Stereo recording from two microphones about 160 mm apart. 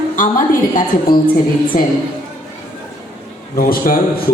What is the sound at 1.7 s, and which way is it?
Speech, 50° left (ahead or behind).